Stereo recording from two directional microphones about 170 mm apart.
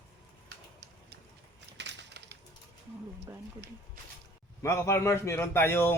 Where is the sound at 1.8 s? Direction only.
90° right.